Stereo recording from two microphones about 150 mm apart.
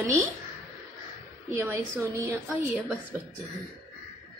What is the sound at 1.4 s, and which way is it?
A woman's voice, 15° right (ahead or behind).